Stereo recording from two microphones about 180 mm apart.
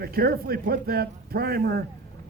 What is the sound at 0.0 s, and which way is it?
Speech, 60° right (ahead or behind).